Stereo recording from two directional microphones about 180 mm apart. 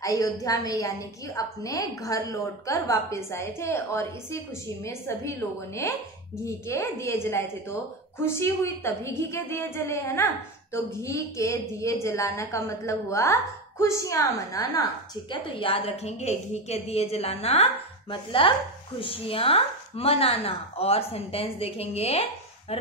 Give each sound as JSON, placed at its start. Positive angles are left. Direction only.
{"t": 0.0, "sound": "a woman's voice", "side_deg": 20}
{"t": 6.4, "sound": "a woman's voice", "side_deg": 15}
{"t": 15.3, "sound": "speech", "side_deg": 30}